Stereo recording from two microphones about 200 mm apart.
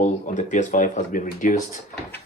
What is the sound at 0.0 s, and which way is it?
Speech, 35° left (ahead or behind).